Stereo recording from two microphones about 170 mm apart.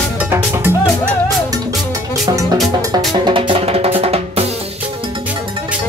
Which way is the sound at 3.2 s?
30° right (ahead or behind).